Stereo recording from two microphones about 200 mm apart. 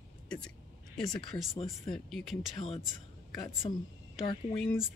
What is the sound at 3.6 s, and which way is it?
Speech, 25° left (ahead or behind).